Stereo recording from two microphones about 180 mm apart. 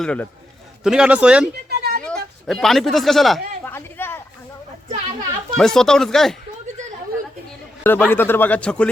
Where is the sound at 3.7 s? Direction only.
10° left (ahead or behind).